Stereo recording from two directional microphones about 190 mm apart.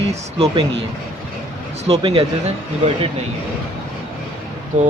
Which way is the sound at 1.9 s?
30° right (ahead or behind).